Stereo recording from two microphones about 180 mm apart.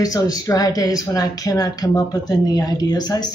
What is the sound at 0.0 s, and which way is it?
Speech, 20° left (ahead or behind).